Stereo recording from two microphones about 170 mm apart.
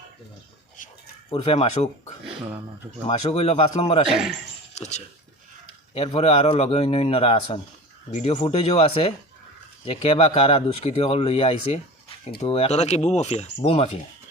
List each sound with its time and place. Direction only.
1.4 s speech: 35° left (ahead or behind)
3.1 s speech: 35° left (ahead or behind)